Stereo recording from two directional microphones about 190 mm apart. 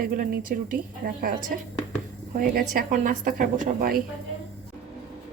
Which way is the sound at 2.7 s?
45° right (ahead or behind).